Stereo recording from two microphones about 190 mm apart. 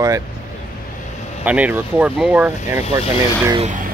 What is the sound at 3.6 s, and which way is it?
Speech, 40° right (ahead or behind).